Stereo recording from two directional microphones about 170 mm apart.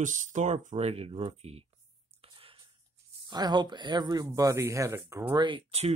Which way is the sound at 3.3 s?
25° right (ahead or behind).